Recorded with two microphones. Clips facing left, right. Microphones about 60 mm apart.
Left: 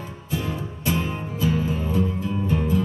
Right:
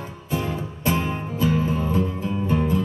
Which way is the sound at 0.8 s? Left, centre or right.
Right.